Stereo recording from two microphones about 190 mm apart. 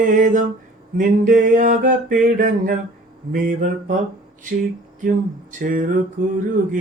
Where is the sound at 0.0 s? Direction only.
40° right (ahead or behind).